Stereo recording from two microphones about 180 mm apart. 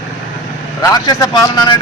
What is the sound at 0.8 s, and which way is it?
Speech, 20° left (ahead or behind).